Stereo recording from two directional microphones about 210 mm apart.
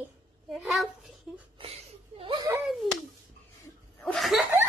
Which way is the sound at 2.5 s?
Centre (ahead or behind).